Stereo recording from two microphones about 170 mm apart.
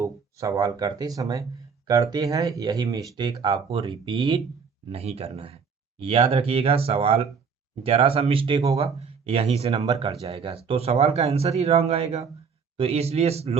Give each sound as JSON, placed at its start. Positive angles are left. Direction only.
{"t": 0.0, "sound": "speech", "side_deg": -20}
{"t": 3.7, "sound": "speech", "side_deg": -35}